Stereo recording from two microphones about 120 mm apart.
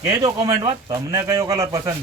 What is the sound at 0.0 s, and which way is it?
A man's voice, 35° right (ahead or behind).